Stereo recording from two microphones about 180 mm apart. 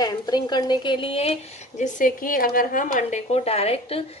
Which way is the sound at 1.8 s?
50° left (ahead or behind).